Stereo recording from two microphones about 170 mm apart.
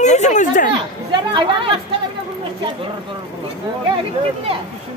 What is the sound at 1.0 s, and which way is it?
Speech, 30° right (ahead or behind).